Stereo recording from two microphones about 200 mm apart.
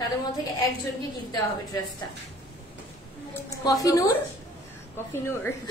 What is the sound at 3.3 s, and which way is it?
A woman's voice, 15° left (ahead or behind).